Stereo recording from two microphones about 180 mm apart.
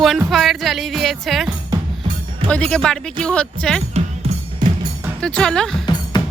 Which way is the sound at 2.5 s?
5° left (ahead or behind).